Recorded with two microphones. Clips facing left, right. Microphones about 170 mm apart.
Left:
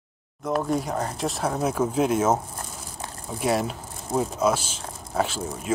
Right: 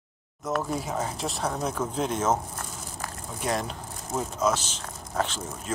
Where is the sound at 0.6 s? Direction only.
Centre (ahead or behind).